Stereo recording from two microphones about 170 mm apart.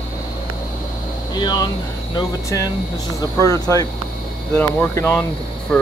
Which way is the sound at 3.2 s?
20° left (ahead or behind).